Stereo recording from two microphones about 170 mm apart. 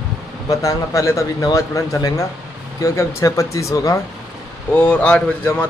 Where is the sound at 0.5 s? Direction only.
20° left (ahead or behind).